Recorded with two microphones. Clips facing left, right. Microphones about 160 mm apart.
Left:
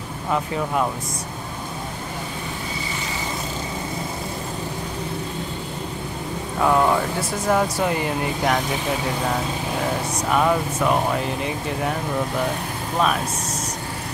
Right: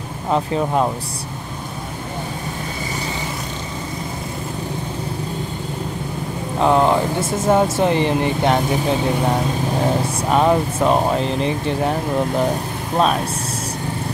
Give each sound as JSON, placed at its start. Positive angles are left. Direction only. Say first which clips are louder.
{"t": 0.3, "sound": "speech", "louder": "right 5 dB", "side_deg": -30}
{"t": 6.6, "sound": "speech", "louder": "right 3 dB", "side_deg": -25}
{"t": 10.3, "sound": "speech", "louder": "right 4 dB", "side_deg": -30}